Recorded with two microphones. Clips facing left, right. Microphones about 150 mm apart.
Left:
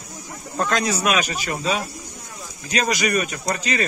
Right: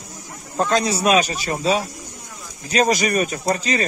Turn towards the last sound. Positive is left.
turn(degrees=-35)  # may be behind; listen again after turning